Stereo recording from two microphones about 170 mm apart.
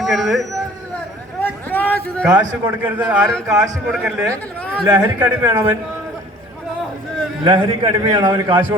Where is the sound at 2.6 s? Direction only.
10° right (ahead or behind).